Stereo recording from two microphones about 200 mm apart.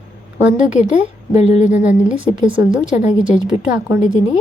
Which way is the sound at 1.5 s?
35° left (ahead or behind).